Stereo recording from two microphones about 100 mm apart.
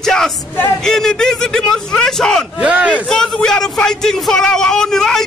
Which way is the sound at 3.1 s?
5° left (ahead or behind).